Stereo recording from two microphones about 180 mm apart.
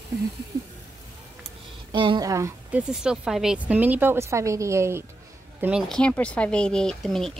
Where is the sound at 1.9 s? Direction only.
25° right (ahead or behind).